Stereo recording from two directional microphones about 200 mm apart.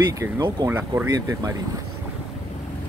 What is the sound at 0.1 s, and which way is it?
Speech, 20° right (ahead or behind).